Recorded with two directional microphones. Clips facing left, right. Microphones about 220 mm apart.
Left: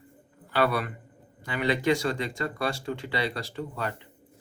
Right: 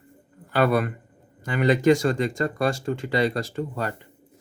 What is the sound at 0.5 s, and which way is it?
Speech, 45° right (ahead or behind).